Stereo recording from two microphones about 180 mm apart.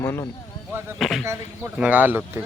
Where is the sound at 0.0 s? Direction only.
15° left (ahead or behind).